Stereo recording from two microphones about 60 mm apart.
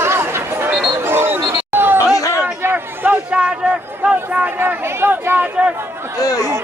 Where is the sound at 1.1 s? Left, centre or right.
Right.